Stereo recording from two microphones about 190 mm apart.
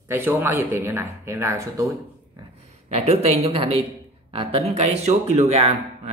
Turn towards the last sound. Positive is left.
turn(degrees=-35)  # may be behind; listen again after turning